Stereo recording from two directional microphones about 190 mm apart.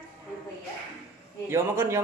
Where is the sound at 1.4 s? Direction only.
15° right (ahead or behind).